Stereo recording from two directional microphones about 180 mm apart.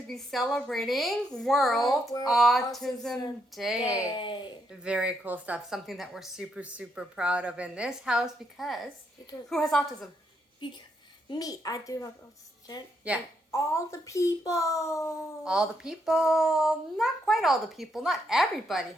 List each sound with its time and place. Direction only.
0.1 s a woman's voice: centre (ahead or behind)
4.1 s speech: 25° left (ahead or behind)
4.7 s a woman's voice: 5° right (ahead or behind)
11.3 s speech: 20° left (ahead or behind)
13.1 s a child's voice: 5° right (ahead or behind)
13.5 s a child's voice: 15° left (ahead or behind)
15.4 s a woman's voice: 5° right (ahead or behind)